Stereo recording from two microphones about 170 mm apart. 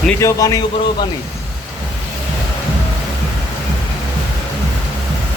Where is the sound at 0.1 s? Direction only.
15° left (ahead or behind).